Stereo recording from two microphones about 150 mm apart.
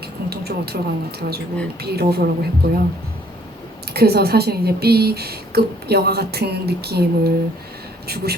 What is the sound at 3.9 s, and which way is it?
Speech, 90° right.